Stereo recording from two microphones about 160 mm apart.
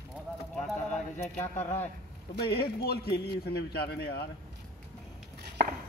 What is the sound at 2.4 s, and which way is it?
A man's voice, 85° left.